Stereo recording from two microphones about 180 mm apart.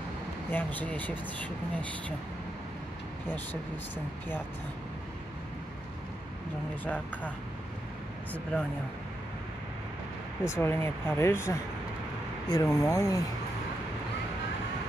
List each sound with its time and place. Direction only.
0.5 s speech: 10° left (ahead or behind)
6.8 s speech: 10° left (ahead or behind)
10.4 s speech: 15° left (ahead or behind)